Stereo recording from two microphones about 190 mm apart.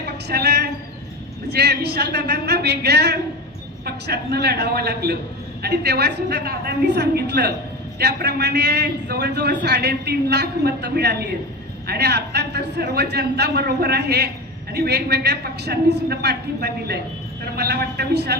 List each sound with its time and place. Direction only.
0.3 s a man's voice: 60° right (ahead or behind)